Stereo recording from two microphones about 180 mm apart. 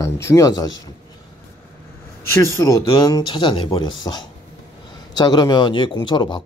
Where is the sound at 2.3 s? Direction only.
15° left (ahead or behind).